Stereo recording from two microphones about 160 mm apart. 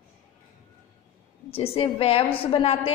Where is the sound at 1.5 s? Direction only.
35° left (ahead or behind).